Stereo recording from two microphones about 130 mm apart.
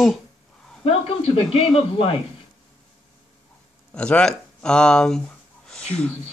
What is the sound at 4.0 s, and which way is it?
Speech, 10° left (ahead or behind).